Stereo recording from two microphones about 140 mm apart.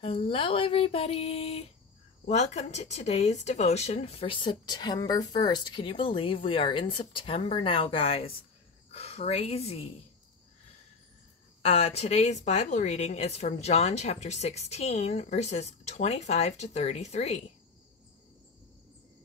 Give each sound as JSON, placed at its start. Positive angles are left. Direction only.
{"t": 0.0, "sound": "a woman's voice", "side_deg": 40}
{"t": 11.6, "sound": "a woman's voice", "side_deg": 45}